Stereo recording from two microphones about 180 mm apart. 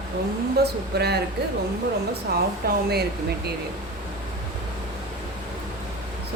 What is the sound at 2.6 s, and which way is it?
Speech, 60° right (ahead or behind).